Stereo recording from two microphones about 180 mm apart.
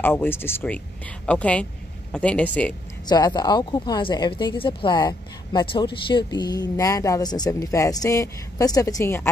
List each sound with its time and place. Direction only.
0.0 s speech: 10° left (ahead or behind)
3.1 s speech: 20° left (ahead or behind)